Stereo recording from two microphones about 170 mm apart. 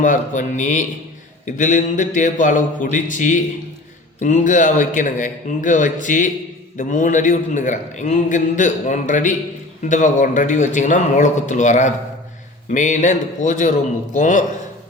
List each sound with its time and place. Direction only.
0.0 s a man's voice: 50° left (ahead or behind)